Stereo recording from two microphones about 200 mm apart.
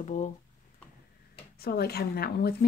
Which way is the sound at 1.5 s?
50° left (ahead or behind).